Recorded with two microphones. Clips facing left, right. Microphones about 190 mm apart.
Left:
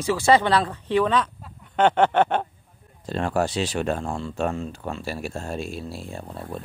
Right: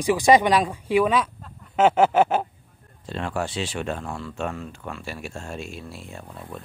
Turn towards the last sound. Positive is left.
turn(degrees=30)  # may be behind; listen again after turning